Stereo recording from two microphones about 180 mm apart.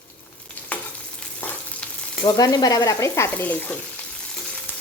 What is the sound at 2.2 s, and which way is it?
A woman's voice, 20° left (ahead or behind).